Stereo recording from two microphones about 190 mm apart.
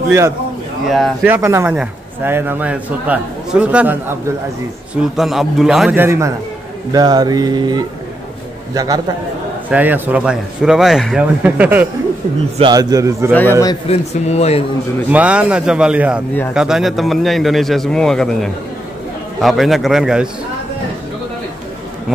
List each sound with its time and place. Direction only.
0.8 s a man's voice: centre (ahead or behind)
6.9 s a sound: 20° right (ahead or behind)
9.7 s a man's voice: 10° right (ahead or behind)
12.5 s a sound: 20° right (ahead or behind)
13.3 s a man's voice: 10° left (ahead or behind)
13.8 s speech: 35° left (ahead or behind)
15.0 s a man's voice: 5° right (ahead or behind)